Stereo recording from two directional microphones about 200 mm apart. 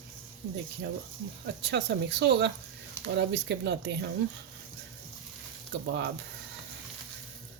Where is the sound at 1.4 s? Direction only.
60° right (ahead or behind).